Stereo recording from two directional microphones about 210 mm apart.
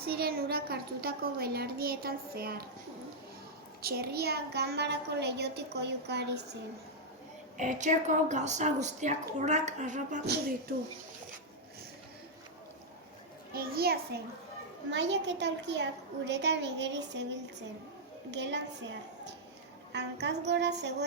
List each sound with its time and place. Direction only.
0.0 s a woman's voice: 45° right (ahead or behind)
3.8 s a woman's voice: 45° right (ahead or behind)
7.5 s a woman's voice: 35° right (ahead or behind)
13.5 s a woman's voice: 45° right (ahead or behind)
18.3 s a woman's voice: 55° right (ahead or behind)
19.9 s a woman's voice: 55° right (ahead or behind)